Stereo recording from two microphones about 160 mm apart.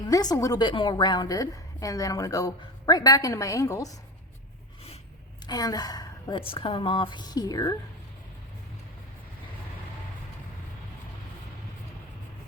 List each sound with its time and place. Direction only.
0.1 s a woman's voice: 25° left (ahead or behind)
5.5 s a woman's voice: 25° left (ahead or behind)